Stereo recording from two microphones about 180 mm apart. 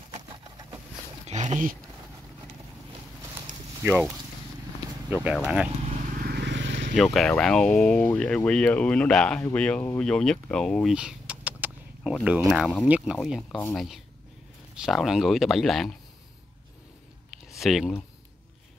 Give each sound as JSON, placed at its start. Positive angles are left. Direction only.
{"t": 0.3, "sound": "vehicle", "side_deg": -20}
{"t": 1.2, "sound": "a sound", "side_deg": -40}
{"t": 3.8, "sound": "speech", "side_deg": -10}
{"t": 5.1, "sound": "speech", "side_deg": -10}
{"t": 5.9, "sound": "vehicle", "side_deg": -55}
{"t": 7.0, "sound": "speech", "side_deg": 5}
{"t": 14.8, "sound": "speech", "side_deg": 0}
{"t": 17.5, "sound": "speech", "side_deg": 0}